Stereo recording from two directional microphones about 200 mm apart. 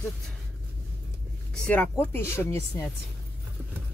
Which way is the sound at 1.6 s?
10° left (ahead or behind).